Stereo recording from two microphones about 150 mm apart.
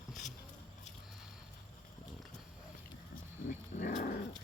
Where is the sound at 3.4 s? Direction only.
65° left (ahead or behind).